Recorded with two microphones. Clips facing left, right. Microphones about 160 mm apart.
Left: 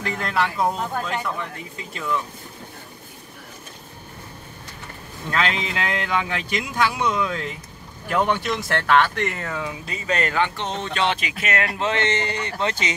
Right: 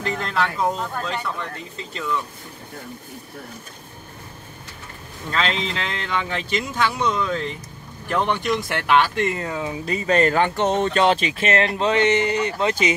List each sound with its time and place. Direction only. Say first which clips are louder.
0.2 s speech: left 2 dB; 10° left (ahead or behind)
5.3 s speech: even; 5° left (ahead or behind)
8.8 s speech: right 1 dB; 20° right (ahead or behind)
9.8 s speech: right 8 dB; 40° right (ahead or behind)
11.1 s speech: right 5 dB; 30° right (ahead or behind)
11.9 s speech: right 8 dB; 10° right (ahead or behind)